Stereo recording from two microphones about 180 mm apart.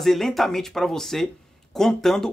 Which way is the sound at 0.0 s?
Centre (ahead or behind).